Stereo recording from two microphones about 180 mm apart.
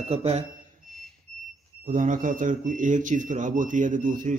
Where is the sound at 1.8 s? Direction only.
45° right (ahead or behind).